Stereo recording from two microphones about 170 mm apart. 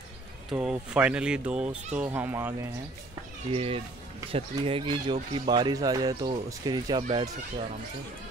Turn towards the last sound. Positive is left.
turn(degrees=-30)  # may be behind; listen again after turning